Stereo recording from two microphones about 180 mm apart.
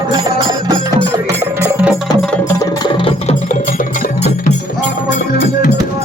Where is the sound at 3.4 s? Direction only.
45° left (ahead or behind).